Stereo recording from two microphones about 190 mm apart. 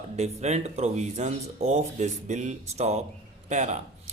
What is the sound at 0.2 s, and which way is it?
Speech, 35° right (ahead or behind).